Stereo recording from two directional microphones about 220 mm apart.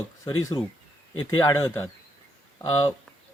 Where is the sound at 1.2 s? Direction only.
15° left (ahead or behind).